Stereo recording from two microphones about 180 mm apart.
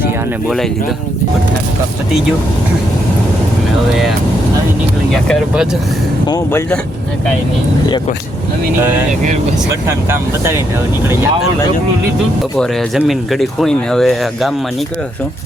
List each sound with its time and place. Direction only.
0.4 s speech: centre (ahead or behind)
5.1 s speech: 5° left (ahead or behind)
6.2 s speech: 20° left (ahead or behind)
9.8 s speech: 15° right (ahead or behind)
13.0 s speech: centre (ahead or behind)